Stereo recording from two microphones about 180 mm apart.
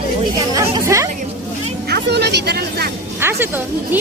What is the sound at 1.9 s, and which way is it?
A woman's voice, 70° right (ahead or behind).